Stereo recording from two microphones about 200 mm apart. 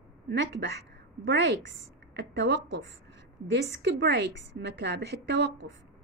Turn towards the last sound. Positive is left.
turn(degrees=-55)  # may be behind; listen again after turning